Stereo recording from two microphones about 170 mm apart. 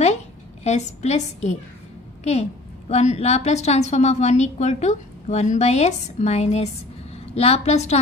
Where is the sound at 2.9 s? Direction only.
40° left (ahead or behind).